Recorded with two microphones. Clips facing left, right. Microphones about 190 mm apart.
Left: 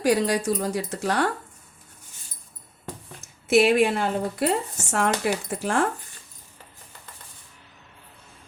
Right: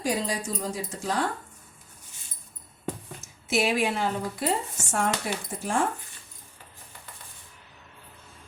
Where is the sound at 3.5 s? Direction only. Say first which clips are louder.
Left 7 dB; 60° left (ahead or behind).